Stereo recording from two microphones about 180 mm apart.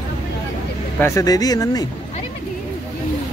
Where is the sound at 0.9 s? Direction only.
15° left (ahead or behind).